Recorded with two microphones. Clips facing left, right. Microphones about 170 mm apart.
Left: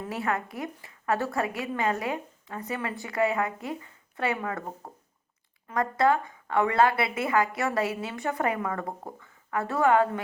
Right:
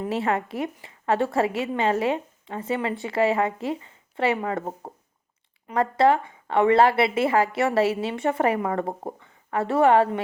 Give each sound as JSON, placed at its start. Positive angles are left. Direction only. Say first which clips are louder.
{"t": 0.0, "sound": "a woman's voice", "louder": "right 5 dB", "side_deg": -25}